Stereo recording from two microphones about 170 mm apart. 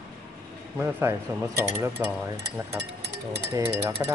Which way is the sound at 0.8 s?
15° right (ahead or behind).